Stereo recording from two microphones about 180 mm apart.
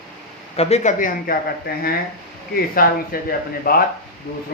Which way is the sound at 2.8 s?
55° left (ahead or behind).